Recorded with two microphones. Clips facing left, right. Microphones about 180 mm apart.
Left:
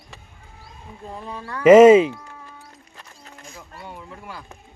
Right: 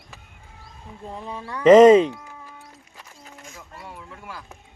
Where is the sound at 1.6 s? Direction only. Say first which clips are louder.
Left 1 dB; 10° left (ahead or behind).